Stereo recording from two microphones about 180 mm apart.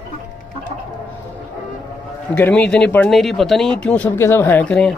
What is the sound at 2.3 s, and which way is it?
Speech, 10° left (ahead or behind).